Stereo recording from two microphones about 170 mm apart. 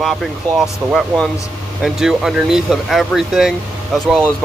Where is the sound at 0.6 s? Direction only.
Centre (ahead or behind).